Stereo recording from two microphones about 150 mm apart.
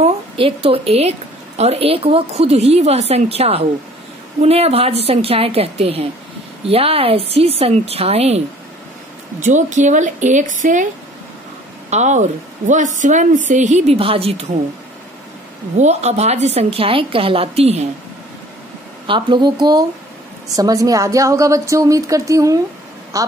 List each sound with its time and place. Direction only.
0.0 s a woman's voice: 40° right (ahead or behind)
9.4 s a woman's voice: 55° right (ahead or behind)
11.9 s a woman's voice: 50° right (ahead or behind)
15.8 s a woman's voice: 50° right (ahead or behind)
19.0 s a woman's voice: 30° right (ahead or behind)